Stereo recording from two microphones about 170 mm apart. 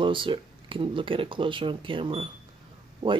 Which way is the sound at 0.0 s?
30° right (ahead or behind).